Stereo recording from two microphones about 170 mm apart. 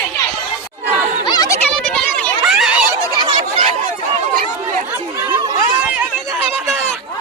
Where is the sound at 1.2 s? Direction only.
25° left (ahead or behind).